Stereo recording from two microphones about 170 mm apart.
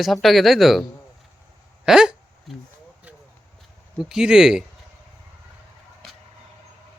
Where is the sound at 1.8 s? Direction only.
5° right (ahead or behind).